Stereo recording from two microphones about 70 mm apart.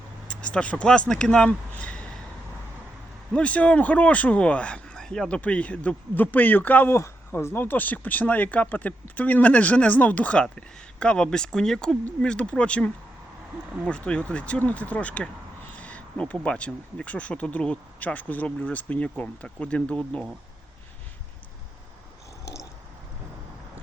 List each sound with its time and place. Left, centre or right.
0.3 s speech: centre
3.3 s speech: centre
5.4 s speech: centre
6.9 s speech: left; by 20.2 s centre